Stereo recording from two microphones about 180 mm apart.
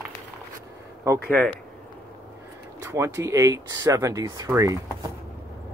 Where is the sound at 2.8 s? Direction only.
15° right (ahead or behind).